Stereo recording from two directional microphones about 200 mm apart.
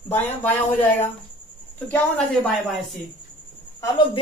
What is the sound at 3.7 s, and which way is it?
Speech, 25° left (ahead or behind).